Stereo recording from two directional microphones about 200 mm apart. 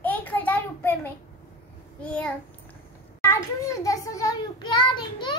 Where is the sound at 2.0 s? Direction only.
5° left (ahead or behind).